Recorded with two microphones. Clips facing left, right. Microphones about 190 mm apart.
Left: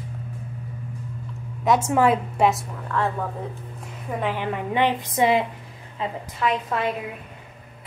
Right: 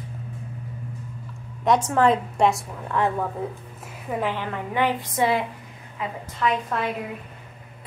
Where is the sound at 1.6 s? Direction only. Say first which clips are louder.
Even; centre (ahead or behind).